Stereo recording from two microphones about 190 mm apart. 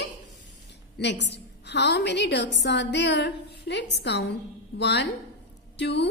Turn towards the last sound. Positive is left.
turn(degrees=65)  # may be behind; listen again after turning